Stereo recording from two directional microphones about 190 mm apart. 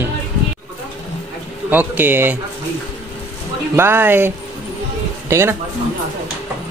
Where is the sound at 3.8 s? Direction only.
10° right (ahead or behind).